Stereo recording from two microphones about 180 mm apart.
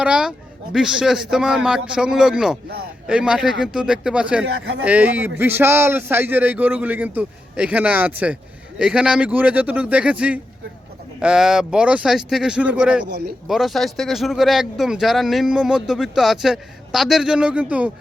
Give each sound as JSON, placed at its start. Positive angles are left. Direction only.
{"t": 0.0, "sound": "speech", "side_deg": -5}
{"t": 4.4, "sound": "a man's voice", "side_deg": -90}
{"t": 4.8, "sound": "a man's voice", "side_deg": -10}